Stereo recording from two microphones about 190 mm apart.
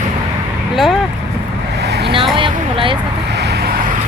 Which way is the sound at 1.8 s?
60° right (ahead or behind).